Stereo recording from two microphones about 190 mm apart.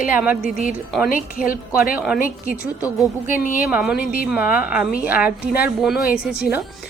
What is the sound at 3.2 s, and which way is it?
Speech, 45° left (ahead or behind).